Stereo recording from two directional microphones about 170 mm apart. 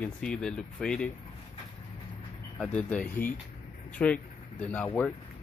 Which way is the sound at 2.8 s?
5° left (ahead or behind).